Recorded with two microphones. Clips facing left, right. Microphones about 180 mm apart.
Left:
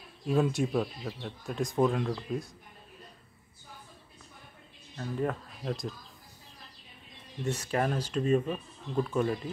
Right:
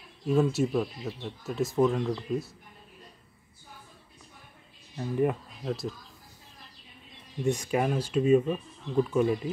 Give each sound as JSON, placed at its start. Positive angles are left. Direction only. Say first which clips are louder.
{"t": 0.3, "sound": "speech", "louder": "right 3 dB", "side_deg": 0}
{"t": 4.9, "sound": "speech", "louder": "right 5 dB", "side_deg": -15}
{"t": 5.7, "sound": "speech", "louder": "right 2 dB", "side_deg": 0}
{"t": 7.4, "sound": "speech", "louder": "right 3 dB", "side_deg": -15}